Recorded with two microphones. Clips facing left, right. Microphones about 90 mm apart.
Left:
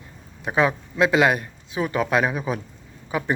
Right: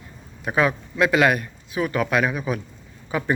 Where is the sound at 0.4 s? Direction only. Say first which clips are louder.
Even; 25° left (ahead or behind).